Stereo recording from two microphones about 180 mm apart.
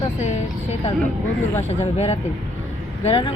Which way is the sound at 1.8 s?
35° left (ahead or behind).